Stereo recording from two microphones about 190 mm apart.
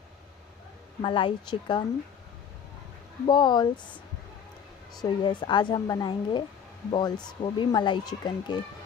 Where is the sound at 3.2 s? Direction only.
25° left (ahead or behind).